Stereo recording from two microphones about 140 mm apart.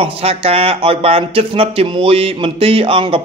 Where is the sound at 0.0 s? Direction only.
45° right (ahead or behind).